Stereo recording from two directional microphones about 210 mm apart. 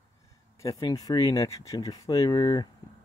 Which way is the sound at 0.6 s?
15° left (ahead or behind).